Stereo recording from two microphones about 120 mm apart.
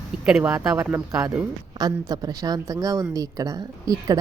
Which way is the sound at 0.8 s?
20° right (ahead or behind).